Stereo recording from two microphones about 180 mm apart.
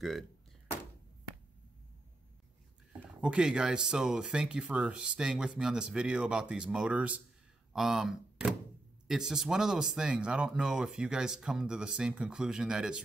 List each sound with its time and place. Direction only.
3.2 s speech: 5° right (ahead or behind)